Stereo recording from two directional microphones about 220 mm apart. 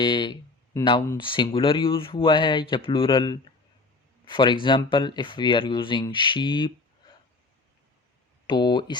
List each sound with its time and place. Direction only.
0.0 s speech: 20° left (ahead or behind)
8.4 s speech: 20° left (ahead or behind)